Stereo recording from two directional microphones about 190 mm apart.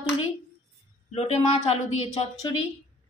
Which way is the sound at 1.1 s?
30° left (ahead or behind).